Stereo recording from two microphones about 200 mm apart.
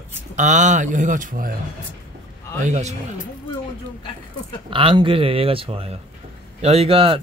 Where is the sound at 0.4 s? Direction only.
35° right (ahead or behind).